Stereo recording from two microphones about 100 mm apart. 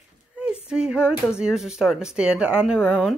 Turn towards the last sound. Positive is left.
turn(degrees=-5)  # may be behind; listen again after turning